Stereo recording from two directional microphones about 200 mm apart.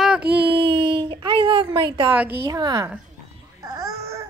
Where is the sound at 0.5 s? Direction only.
25° right (ahead or behind).